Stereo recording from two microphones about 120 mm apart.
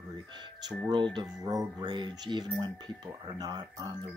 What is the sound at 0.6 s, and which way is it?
Speech, 35° right (ahead or behind).